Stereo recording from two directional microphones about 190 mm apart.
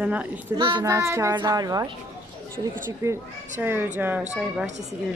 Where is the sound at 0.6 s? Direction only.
25° right (ahead or behind).